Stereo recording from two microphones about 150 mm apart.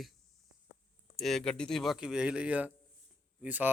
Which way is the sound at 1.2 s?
Centre (ahead or behind).